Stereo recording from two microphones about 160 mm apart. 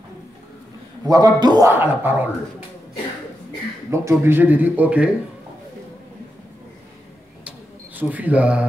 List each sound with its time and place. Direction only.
1.0 s a man's voice: 25° right (ahead or behind)
1.7 s speech: 10° right (ahead or behind)
3.9 s speech: 15° right (ahead or behind)
7.4 s a sound: 10° right (ahead or behind)